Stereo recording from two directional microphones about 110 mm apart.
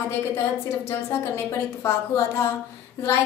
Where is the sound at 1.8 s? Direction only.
25° left (ahead or behind).